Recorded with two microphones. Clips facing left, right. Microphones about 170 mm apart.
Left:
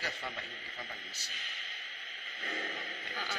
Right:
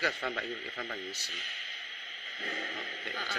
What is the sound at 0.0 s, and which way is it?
A man's voice, 75° right (ahead or behind).